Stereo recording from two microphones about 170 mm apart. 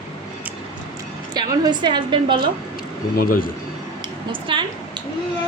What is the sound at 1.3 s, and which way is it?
A woman's voice, 25° right (ahead or behind).